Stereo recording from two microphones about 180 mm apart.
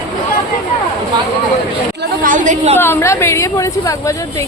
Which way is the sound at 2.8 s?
15° left (ahead or behind).